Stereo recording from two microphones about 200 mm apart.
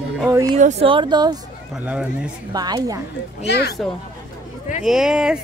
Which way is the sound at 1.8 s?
5° right (ahead or behind).